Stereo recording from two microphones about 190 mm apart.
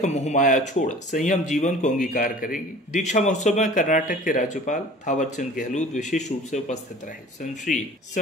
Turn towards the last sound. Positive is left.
turn(degrees=40)  # may be behind; listen again after turning